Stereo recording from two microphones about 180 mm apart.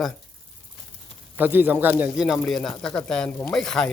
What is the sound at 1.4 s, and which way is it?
Speech, 10° right (ahead or behind).